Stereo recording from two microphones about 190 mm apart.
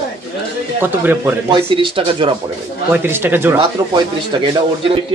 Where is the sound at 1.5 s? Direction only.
25° right (ahead or behind).